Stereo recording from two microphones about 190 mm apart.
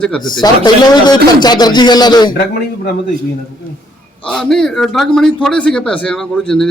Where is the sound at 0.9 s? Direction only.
20° left (ahead or behind).